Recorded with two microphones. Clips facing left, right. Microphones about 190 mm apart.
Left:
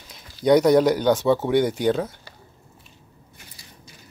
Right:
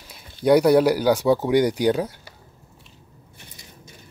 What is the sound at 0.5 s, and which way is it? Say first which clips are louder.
Speech: even; 5° right (ahead or behind).